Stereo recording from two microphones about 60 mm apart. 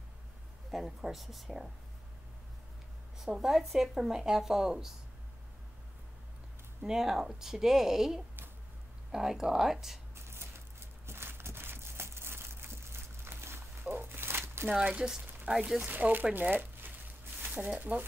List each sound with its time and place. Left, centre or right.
0.7 s speech: centre
3.3 s speech: centre
6.8 s speech: centre
10.2 s a sound: right
14.8 s speech: centre; by 16.9 s right
17.4 s a sound: right
17.6 s speech: right